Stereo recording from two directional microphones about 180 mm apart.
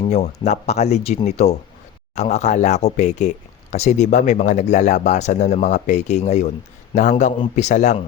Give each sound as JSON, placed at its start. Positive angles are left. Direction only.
{"t": 0.0, "sound": "speech", "side_deg": 35}